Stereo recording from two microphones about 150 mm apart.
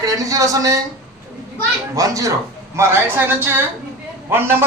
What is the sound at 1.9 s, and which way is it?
A man's voice, 20° right (ahead or behind).